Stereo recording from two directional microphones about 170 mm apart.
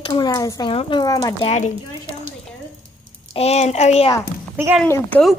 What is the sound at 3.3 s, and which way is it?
Speech, 40° left (ahead or behind).